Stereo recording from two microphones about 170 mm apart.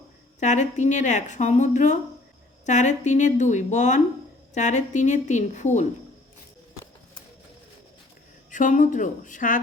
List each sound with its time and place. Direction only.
0.3 s speech: 45° left (ahead or behind)
8.4 s speech: 50° left (ahead or behind)